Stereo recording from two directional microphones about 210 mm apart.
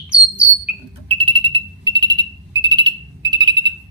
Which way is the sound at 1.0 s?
25° right (ahead or behind).